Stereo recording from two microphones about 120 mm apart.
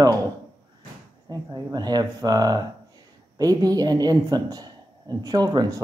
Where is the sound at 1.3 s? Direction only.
35° right (ahead or behind).